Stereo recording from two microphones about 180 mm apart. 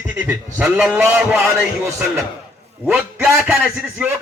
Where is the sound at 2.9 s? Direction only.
15° right (ahead or behind).